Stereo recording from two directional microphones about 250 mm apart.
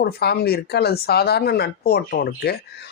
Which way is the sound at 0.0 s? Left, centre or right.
Left.